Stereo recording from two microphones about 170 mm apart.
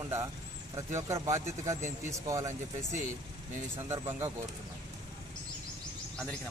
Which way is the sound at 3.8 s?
15° right (ahead or behind).